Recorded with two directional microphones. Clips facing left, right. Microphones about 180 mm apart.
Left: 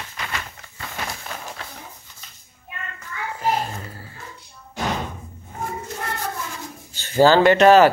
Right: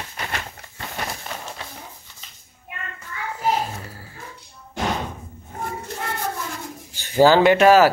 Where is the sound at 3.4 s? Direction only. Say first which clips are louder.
Right 1 dB; 5° right (ahead or behind).